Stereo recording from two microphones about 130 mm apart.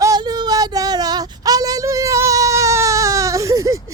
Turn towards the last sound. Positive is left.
turn(degrees=-25)  # may be behind; listen again after turning